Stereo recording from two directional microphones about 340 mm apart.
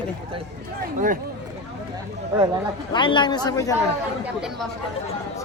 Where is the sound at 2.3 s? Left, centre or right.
Centre.